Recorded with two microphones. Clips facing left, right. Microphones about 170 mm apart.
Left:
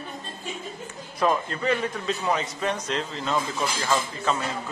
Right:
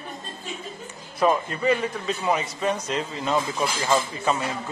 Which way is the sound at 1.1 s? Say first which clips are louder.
Right 2 dB; 5° right (ahead or behind).